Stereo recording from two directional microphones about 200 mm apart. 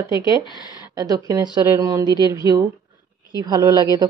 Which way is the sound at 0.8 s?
20° right (ahead or behind).